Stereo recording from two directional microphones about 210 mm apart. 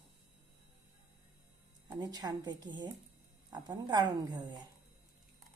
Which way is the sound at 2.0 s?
20° right (ahead or behind).